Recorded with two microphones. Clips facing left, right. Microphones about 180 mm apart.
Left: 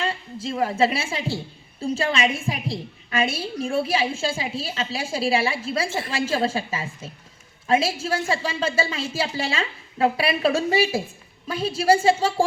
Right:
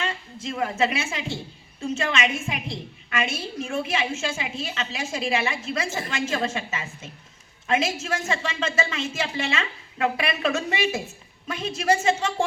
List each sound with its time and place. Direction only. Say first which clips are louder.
0.0 s a woman's voice: left 3 dB; 30° left (ahead or behind)